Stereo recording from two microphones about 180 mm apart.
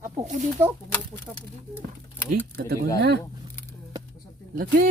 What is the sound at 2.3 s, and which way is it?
Speech, 55° right (ahead or behind).